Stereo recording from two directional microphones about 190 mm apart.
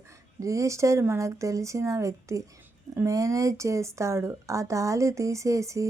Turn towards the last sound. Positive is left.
turn(degrees=-15)  # may be behind; listen again after turning